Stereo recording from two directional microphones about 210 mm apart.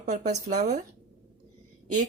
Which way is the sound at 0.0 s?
35° right (ahead or behind).